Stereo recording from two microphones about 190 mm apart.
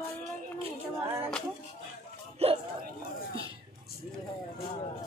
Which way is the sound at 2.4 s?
35° right (ahead or behind).